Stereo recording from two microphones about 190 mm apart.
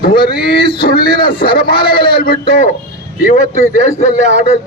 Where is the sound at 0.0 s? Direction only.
50° left (ahead or behind).